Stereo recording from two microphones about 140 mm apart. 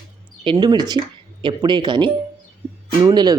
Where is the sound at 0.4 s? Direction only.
35° right (ahead or behind).